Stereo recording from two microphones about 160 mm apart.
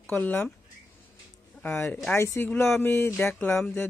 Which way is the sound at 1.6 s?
15° left (ahead or behind).